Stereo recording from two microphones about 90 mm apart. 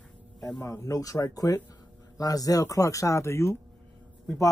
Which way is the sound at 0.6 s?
40° left (ahead or behind).